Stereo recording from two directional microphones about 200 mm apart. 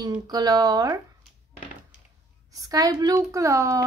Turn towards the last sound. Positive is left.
turn(degrees=-15)  # may be behind; listen again after turning